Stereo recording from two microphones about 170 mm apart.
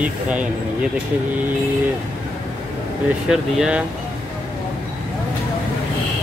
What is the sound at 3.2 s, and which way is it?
Speech, 5° right (ahead or behind).